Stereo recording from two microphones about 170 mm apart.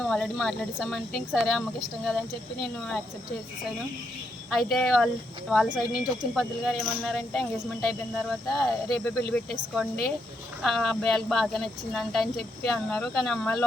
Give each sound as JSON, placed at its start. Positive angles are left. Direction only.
{"t": 0.0, "sound": "speech", "side_deg": 5}
{"t": 4.4, "sound": "speech", "side_deg": 0}